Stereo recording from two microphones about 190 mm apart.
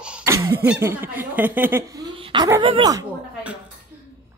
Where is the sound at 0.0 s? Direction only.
10° right (ahead or behind).